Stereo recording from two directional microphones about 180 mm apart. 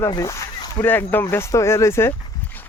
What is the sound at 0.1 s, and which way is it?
A man's voice, 20° left (ahead or behind).